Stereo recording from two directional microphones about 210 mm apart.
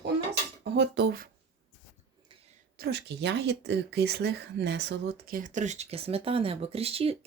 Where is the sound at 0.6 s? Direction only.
55° right (ahead or behind).